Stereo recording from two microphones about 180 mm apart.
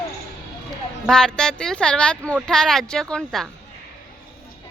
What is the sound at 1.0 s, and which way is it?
Speech, 5° left (ahead or behind).